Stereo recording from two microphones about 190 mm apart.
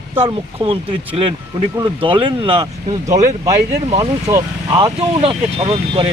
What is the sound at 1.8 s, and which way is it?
Speech, 25° right (ahead or behind).